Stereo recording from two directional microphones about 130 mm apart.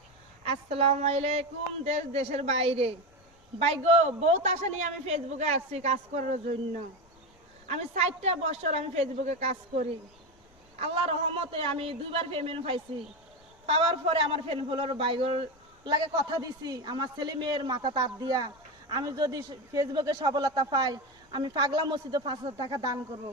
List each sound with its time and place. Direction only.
0.4 s a man's voice: 50° right (ahead or behind)
7.7 s a man's voice: 60° right (ahead or behind)
10.8 s a man's voice: 45° right (ahead or behind); by 22.9 s 30° right (ahead or behind)